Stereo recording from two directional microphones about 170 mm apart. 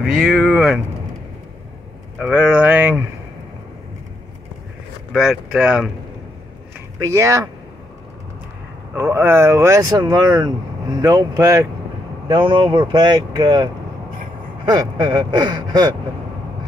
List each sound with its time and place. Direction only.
0.0 s speech: centre (ahead or behind)
2.1 s speech: 5° right (ahead or behind)
5.1 s speech: 5° right (ahead or behind)
7.0 s speech: 20° right (ahead or behind)
8.9 s speech: 15° right (ahead or behind)
12.3 s speech: 30° right (ahead or behind)
14.7 s speech: 25° right (ahead or behind)